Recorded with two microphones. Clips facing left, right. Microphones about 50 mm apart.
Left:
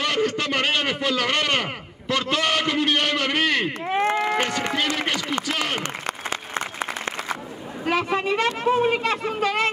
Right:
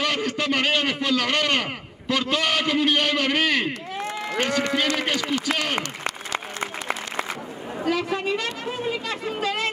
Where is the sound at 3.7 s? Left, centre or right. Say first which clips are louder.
Left 7 dB; left.